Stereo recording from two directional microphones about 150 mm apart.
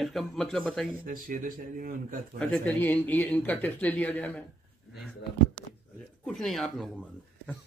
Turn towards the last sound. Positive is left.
turn(degrees=0)  # may be behind; listen again after turning